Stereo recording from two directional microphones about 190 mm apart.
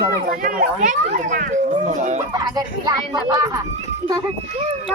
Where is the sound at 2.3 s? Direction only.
20° right (ahead or behind).